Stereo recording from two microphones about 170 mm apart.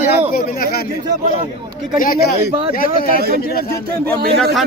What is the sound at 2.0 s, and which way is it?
Speech, 55° left (ahead or behind).